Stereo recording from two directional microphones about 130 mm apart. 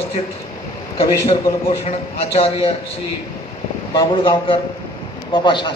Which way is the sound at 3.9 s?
40° left (ahead or behind).